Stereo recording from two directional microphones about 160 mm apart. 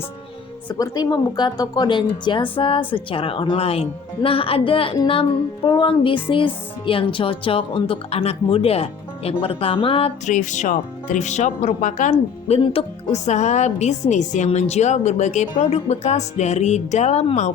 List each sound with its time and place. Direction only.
0.7 s speech: 25° left (ahead or behind)
2.9 s music: 35° left (ahead or behind)
10.2 s a woman's voice: 50° left (ahead or behind)
12.5 s a woman's voice: 40° left (ahead or behind)